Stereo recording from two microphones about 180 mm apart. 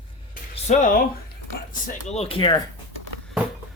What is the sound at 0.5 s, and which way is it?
Speech, 40° left (ahead or behind).